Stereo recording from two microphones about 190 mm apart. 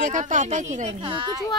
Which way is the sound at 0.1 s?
40° right (ahead or behind).